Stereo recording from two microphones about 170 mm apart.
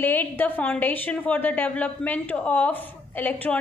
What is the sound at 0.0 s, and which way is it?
A woman's voice, 10° left (ahead or behind).